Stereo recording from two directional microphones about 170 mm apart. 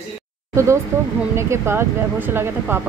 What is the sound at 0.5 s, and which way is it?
Speech, 15° right (ahead or behind).